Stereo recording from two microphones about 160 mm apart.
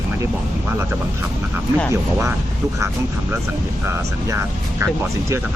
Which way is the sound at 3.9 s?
15° right (ahead or behind).